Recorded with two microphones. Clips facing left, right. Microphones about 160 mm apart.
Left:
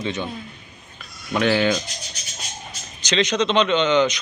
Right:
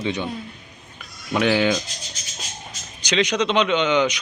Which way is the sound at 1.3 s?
15° right (ahead or behind).